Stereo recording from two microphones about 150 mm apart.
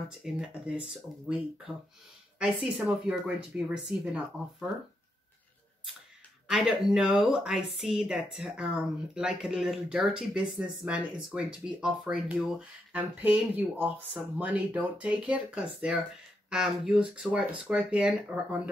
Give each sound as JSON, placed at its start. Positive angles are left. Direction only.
{"t": 0.2, "sound": "speech", "side_deg": -5}
{"t": 3.1, "sound": "speech", "side_deg": -5}
{"t": 6.5, "sound": "speech", "side_deg": -5}